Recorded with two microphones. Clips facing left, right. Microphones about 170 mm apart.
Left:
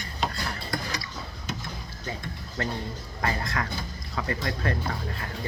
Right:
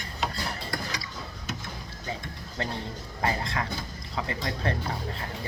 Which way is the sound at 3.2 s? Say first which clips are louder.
Even; 25° right (ahead or behind).